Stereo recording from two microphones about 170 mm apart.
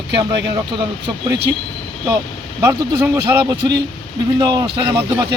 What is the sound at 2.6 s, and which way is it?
Speech, 20° right (ahead or behind).